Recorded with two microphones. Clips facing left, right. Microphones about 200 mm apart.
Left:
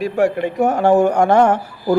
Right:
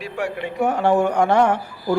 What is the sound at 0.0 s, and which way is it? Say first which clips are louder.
Speech: left 9 dB; 45° left (ahead or behind).